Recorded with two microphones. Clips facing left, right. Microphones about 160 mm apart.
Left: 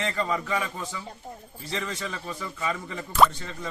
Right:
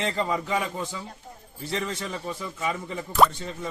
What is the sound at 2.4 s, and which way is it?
Speech, 15° right (ahead or behind).